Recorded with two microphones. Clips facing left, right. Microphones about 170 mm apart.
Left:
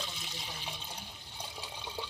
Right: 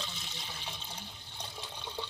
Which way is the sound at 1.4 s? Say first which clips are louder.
Even; 10° left (ahead or behind).